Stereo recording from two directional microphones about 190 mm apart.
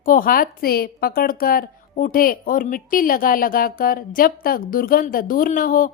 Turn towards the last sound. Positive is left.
turn(degrees=45)  # may be behind; listen again after turning